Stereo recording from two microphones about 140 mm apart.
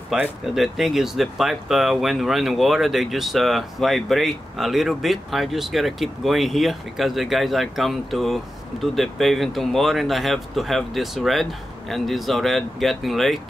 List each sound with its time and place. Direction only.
0.1 s speech: 5° right (ahead or behind)